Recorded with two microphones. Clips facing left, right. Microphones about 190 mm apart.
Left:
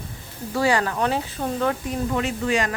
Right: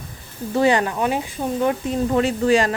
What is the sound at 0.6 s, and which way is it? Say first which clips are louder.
Speech: right 3 dB; 20° right (ahead or behind).